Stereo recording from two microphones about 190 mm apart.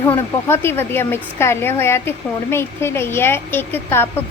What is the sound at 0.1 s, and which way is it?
Speech, 10° left (ahead or behind).